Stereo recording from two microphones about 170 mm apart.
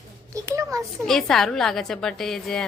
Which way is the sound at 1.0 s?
Centre (ahead or behind).